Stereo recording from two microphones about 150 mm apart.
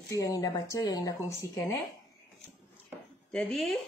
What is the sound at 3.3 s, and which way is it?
Speech, centre (ahead or behind).